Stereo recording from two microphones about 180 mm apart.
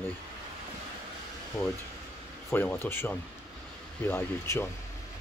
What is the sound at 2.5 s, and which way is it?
Speech, 10° left (ahead or behind).